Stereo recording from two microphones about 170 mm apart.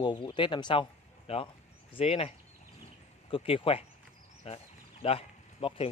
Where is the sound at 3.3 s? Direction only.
30° left (ahead or behind).